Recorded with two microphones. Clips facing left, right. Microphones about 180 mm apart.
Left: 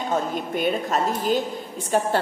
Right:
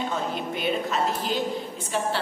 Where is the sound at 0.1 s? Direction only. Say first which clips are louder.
Left 4 dB; 45° left (ahead or behind).